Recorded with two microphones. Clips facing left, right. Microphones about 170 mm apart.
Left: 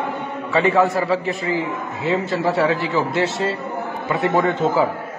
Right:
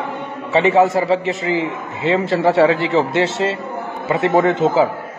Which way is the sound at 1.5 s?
85° right.